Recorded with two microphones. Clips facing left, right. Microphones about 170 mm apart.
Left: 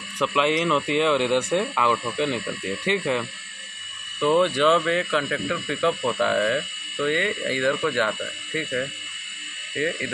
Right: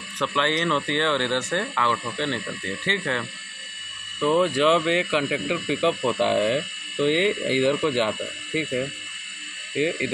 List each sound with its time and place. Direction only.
0.3 s speech: 5° left (ahead or behind)
4.2 s speech: 5° right (ahead or behind)
6.1 s speech: 25° right (ahead or behind)